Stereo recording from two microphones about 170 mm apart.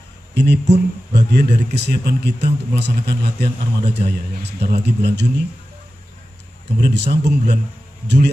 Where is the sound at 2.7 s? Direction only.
85° right.